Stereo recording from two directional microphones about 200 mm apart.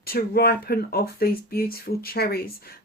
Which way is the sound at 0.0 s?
50° left (ahead or behind).